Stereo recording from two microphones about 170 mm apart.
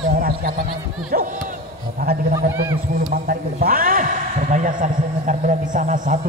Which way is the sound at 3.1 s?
60° right (ahead or behind).